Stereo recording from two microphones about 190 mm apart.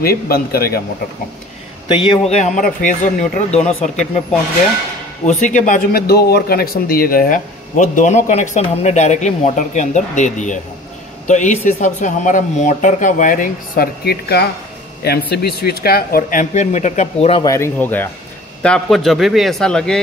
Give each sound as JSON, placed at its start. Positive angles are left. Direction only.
{"t": 0.0, "sound": "speech", "side_deg": 55}
{"t": 1.9, "sound": "speech", "side_deg": 25}
{"t": 5.2, "sound": "speech", "side_deg": 40}
{"t": 17.4, "sound": "a man's voice", "side_deg": 15}